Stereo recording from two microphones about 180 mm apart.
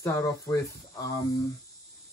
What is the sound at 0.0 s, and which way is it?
Speech, 15° left (ahead or behind).